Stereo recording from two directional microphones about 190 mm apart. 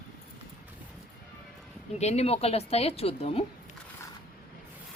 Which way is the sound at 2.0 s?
35° left (ahead or behind).